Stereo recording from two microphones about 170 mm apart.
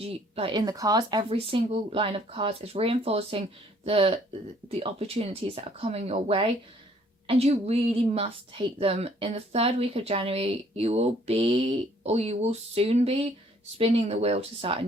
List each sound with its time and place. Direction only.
0.0 s a woman's voice: 35° right (ahead or behind)